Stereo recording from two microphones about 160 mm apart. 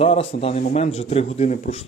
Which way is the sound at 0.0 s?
40° left (ahead or behind).